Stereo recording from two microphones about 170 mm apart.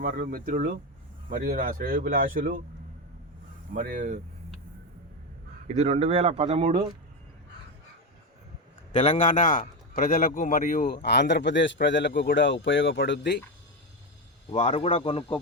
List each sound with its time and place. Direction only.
0.0 s speech: 60° right (ahead or behind)
3.7 s speech: 50° right (ahead or behind)
5.6 s speech: 40° right (ahead or behind)
8.9 s a man's voice: 40° left (ahead or behind); by 13.4 s 90° left
14.5 s speech: 35° left (ahead or behind)